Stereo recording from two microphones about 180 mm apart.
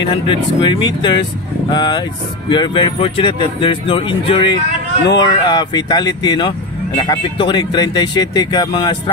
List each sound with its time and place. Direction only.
0.3 s speech: 25° left (ahead or behind)